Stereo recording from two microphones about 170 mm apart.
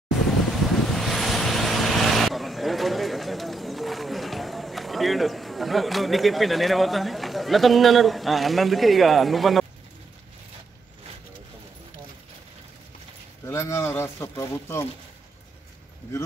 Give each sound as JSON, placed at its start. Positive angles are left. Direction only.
{"t": 0.7, "sound": "vehicle", "side_deg": 0}
{"t": 13.5, "sound": "speech", "side_deg": 15}